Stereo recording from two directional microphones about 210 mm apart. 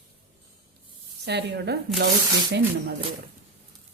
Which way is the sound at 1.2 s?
55° right (ahead or behind).